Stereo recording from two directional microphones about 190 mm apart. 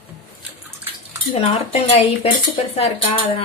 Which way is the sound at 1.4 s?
30° left (ahead or behind).